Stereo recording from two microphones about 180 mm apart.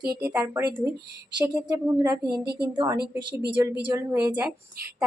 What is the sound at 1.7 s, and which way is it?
A woman's voice, 20° right (ahead or behind).